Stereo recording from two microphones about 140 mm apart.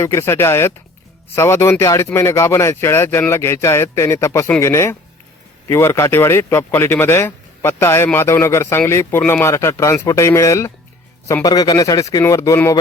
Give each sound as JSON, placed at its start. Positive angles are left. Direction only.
{"t": 0.0, "sound": "speech", "side_deg": 20}